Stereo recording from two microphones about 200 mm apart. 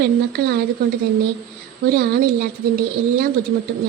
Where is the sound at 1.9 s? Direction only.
50° right (ahead or behind).